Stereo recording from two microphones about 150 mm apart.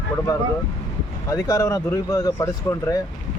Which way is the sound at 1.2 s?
20° left (ahead or behind).